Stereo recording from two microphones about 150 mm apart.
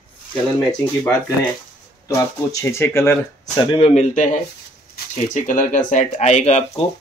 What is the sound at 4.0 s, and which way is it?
Speech, 55° left (ahead or behind).